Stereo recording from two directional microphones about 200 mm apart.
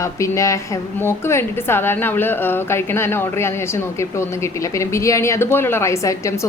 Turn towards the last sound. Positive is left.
turn(degrees=15)  # may be behind; listen again after turning